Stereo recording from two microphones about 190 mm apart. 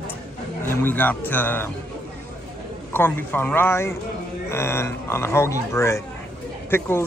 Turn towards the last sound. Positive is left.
turn(degrees=10)  # may be behind; listen again after turning